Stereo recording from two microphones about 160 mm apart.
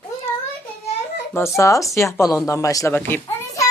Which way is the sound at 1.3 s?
15° left (ahead or behind).